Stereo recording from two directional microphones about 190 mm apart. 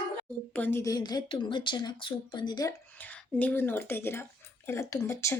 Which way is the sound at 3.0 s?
10° left (ahead or behind).